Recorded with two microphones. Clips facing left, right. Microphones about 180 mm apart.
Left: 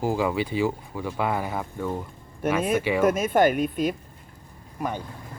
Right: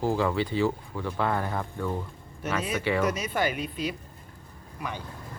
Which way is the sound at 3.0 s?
50° left (ahead or behind).